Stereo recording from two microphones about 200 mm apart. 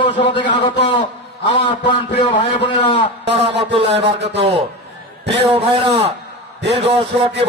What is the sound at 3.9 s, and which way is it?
Speech, 60° right (ahead or behind).